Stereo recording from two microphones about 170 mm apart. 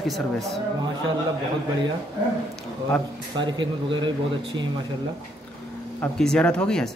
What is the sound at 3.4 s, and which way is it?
Speech, 25° right (ahead or behind).